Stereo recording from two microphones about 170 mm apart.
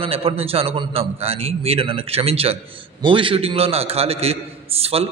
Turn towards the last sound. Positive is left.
turn(degrees=-35)  # may be behind; listen again after turning